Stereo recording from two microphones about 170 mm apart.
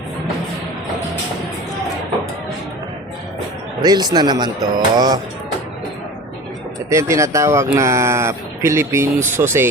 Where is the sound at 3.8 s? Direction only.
25° right (ahead or behind).